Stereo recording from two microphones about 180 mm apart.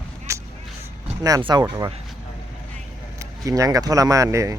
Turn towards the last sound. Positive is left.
turn(degrees=-20)  # may be behind; listen again after turning